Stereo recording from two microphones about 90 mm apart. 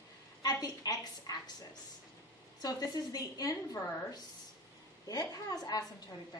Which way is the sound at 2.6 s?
45° left (ahead or behind).